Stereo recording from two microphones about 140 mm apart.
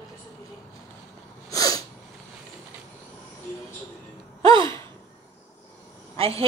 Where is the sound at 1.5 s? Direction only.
25° left (ahead or behind).